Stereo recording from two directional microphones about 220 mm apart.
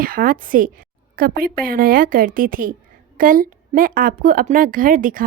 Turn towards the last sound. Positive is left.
turn(degrees=-40)  # may be behind; listen again after turning